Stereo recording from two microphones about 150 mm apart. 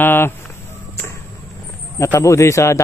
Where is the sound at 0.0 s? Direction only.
15° left (ahead or behind).